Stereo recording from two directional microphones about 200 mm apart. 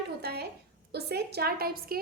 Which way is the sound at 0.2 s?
55° right (ahead or behind).